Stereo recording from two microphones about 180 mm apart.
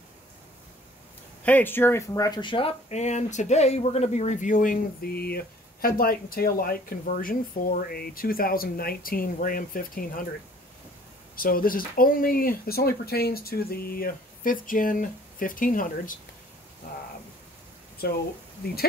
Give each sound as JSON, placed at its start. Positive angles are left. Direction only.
{"t": 1.4, "sound": "speech", "side_deg": 10}
{"t": 11.3, "sound": "speech", "side_deg": 55}